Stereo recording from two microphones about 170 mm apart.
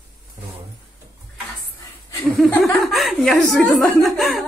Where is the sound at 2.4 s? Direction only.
Centre (ahead or behind).